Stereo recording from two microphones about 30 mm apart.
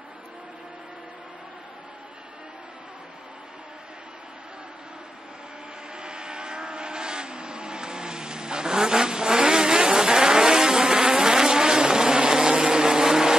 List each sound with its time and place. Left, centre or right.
5.9 s vehicle: right